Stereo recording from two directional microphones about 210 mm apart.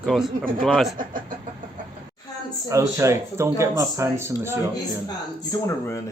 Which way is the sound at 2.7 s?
15° right (ahead or behind).